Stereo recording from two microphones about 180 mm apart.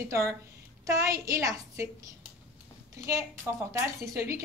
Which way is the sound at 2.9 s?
15° right (ahead or behind).